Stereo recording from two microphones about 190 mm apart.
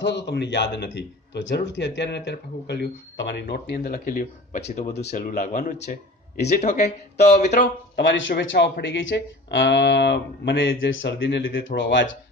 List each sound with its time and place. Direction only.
0.0 s speech: 65° left (ahead or behind)
4.1 s speech: 40° left (ahead or behind)
7.5 s speech: 65° left (ahead or behind)